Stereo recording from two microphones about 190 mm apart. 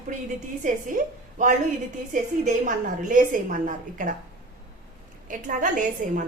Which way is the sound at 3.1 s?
45° right (ahead or behind).